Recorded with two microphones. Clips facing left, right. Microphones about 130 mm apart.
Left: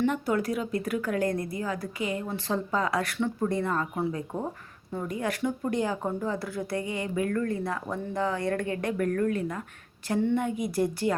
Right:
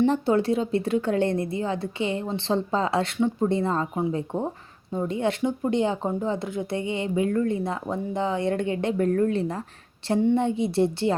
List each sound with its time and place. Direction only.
0.0 s speech: 30° right (ahead or behind)